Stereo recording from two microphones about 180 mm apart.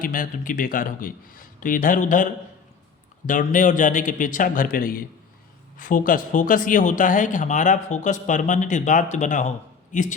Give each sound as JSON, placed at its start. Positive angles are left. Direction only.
{"t": 0.0, "sound": "speech", "side_deg": 50}